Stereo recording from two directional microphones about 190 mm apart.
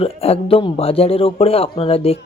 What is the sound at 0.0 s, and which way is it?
A man's voice, 30° left (ahead or behind).